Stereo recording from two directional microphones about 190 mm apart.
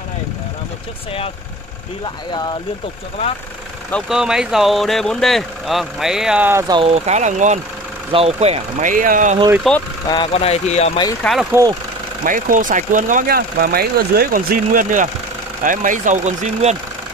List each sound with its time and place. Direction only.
3.9 s speech: 5° right (ahead or behind)
6.7 s speech: 30° right (ahead or behind)
9.6 s speech: 5° left (ahead or behind)
10.0 s speech: 25° left (ahead or behind)
11.2 s speech: 5° left (ahead or behind)
12.3 s speech: 45° right (ahead or behind)